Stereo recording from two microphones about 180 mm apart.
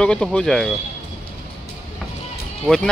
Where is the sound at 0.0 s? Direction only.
5° left (ahead or behind).